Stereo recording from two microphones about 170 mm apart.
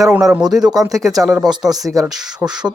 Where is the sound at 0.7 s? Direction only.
20° right (ahead or behind).